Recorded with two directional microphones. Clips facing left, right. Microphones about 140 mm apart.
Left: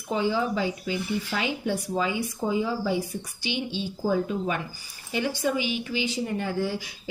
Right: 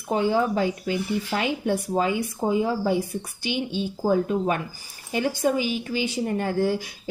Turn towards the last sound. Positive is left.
turn(degrees=-50)  # may be behind; listen again after turning